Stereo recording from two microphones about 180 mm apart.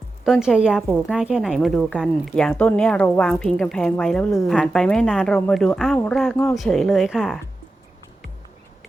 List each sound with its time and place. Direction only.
0.3 s a woman's voice: 5° right (ahead or behind)
6.3 s speech: 15° left (ahead or behind)
6.6 s a woman's voice: centre (ahead or behind)